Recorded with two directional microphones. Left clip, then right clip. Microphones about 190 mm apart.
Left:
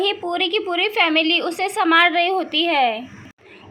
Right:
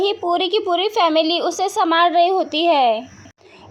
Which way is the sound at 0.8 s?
45° right (ahead or behind).